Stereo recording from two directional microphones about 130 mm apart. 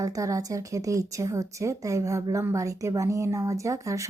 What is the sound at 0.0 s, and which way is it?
A woman's voice, 25° right (ahead or behind).